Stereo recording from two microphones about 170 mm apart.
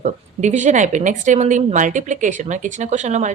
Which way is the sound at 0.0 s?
45° right (ahead or behind).